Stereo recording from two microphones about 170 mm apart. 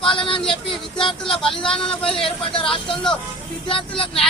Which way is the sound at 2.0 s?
30° left (ahead or behind).